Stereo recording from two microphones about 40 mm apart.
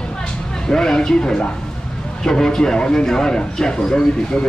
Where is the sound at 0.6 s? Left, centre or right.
Centre.